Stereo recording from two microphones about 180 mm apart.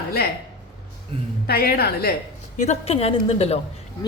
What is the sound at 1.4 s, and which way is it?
Speech, 60° left (ahead or behind).